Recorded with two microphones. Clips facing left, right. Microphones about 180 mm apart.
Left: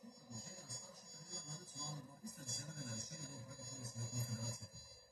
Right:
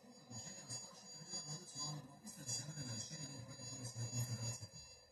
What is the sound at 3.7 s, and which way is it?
Vehicle, 10° right (ahead or behind).